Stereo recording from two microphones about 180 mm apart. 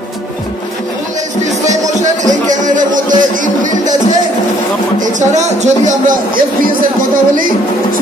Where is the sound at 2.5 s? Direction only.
45° right (ahead or behind).